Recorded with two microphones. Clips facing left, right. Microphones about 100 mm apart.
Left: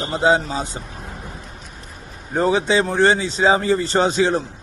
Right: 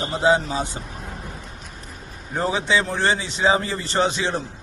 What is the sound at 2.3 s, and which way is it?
Speech, 40° left (ahead or behind).